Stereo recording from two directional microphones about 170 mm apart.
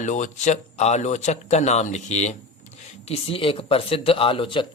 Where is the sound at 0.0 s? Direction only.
45° left (ahead or behind).